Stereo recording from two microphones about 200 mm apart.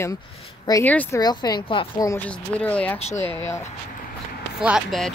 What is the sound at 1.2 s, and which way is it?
Speech, 20° left (ahead or behind).